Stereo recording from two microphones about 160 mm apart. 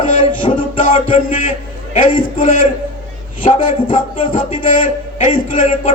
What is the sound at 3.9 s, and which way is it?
Music, 30° left (ahead or behind).